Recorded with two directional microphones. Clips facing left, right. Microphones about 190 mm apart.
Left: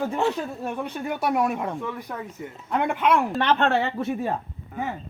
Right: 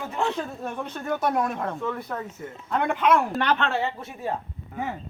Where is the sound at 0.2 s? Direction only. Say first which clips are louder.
Left 2 dB; 5° left (ahead or behind).